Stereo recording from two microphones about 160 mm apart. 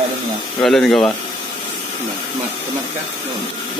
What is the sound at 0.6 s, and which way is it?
Speech, centre (ahead or behind).